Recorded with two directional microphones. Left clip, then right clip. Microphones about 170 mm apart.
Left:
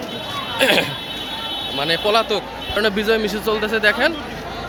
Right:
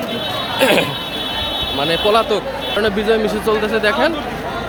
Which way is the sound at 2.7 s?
15° left (ahead or behind).